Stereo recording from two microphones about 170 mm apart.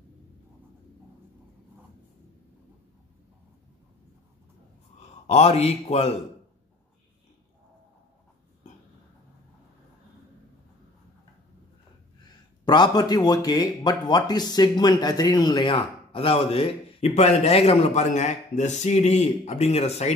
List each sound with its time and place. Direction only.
5.2 s speech: 40° left (ahead or behind)
12.6 s speech: 25° left (ahead or behind)